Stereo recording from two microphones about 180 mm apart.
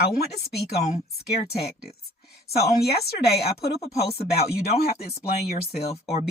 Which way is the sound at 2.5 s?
60° left (ahead or behind).